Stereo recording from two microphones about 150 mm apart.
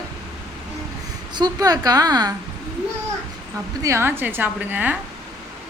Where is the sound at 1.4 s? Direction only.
25° right (ahead or behind).